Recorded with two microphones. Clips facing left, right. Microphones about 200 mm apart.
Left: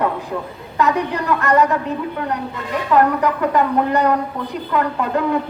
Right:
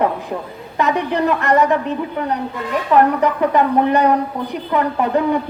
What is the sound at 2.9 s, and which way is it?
A woman's voice, 20° right (ahead or behind).